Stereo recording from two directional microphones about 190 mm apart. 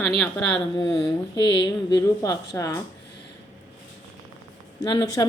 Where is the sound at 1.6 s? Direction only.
20° left (ahead or behind).